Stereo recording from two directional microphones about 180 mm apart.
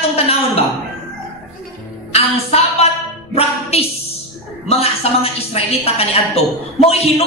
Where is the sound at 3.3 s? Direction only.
35° left (ahead or behind).